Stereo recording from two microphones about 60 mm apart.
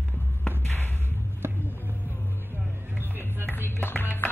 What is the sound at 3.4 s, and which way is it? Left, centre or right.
Music, left.